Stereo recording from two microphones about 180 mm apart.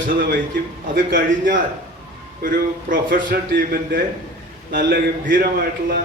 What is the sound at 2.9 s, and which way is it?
A man's voice, 50° right (ahead or behind).